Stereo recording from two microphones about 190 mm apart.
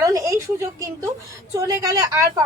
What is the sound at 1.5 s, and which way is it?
Speech, 15° right (ahead or behind).